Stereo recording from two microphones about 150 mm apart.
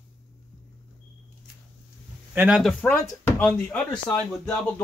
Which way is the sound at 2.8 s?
20° left (ahead or behind).